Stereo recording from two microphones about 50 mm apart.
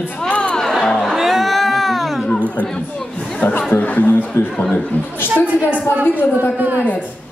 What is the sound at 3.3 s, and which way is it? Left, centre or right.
Speech, left.